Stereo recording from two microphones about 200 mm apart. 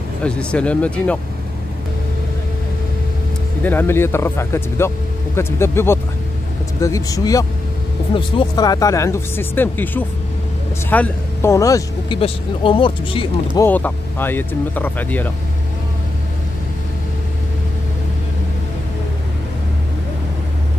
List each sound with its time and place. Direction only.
0.2 s speech: 5° left (ahead or behind)
3.6 s speech: 10° left (ahead or behind)
13.6 s speech: 10° left (ahead or behind)